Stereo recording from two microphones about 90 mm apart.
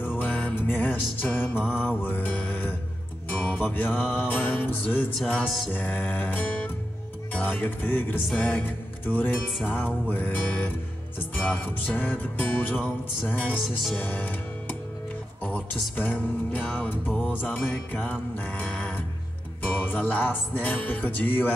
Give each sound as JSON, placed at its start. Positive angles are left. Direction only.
{"t": 0.2, "sound": "music", "side_deg": 20}